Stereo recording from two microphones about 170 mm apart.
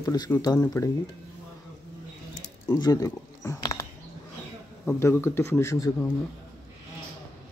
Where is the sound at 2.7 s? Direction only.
20° left (ahead or behind).